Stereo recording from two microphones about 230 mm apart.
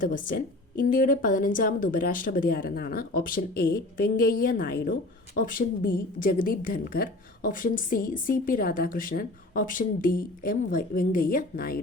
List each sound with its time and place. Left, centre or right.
0.0 s a woman's voice: left